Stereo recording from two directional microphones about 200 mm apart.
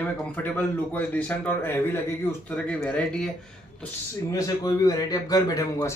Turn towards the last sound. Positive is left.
turn(degrees=15)  # may be behind; listen again after turning